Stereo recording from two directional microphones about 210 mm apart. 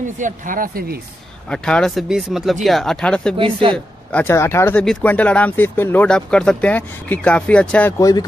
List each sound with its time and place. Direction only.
0.0 s speech: 40° right (ahead or behind)
1.5 s speech: 5° left (ahead or behind)
3.3 s speech: 25° right (ahead or behind)
3.7 s speech: 5° left (ahead or behind)